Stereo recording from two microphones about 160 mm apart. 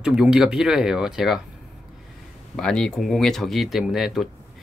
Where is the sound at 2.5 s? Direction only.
5° left (ahead or behind).